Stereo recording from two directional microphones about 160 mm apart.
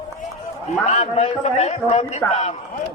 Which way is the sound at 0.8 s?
45° left (ahead or behind).